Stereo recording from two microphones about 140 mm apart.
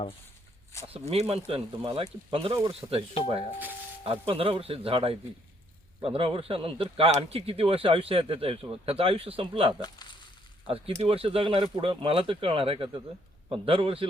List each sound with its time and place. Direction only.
0.9 s speech: 50° right (ahead or behind)
2.8 s speech: 25° right (ahead or behind)
4.0 s a man's voice: 45° right (ahead or behind)
9.8 s speech: 30° left (ahead or behind)
10.9 s a man's voice: 45° right (ahead or behind)